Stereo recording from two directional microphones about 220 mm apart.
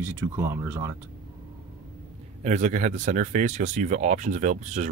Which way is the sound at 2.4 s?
35° right (ahead or behind).